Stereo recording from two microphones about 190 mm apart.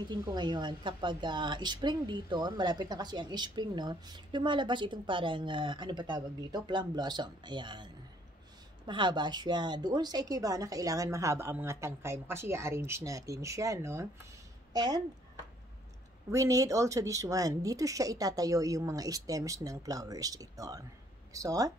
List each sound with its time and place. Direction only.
0.0 s a woman's voice: 20° right (ahead or behind)
16.3 s a woman's voice: 15° right (ahead or behind)